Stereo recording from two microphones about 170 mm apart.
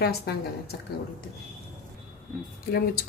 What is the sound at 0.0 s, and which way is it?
Speech, 70° left (ahead or behind).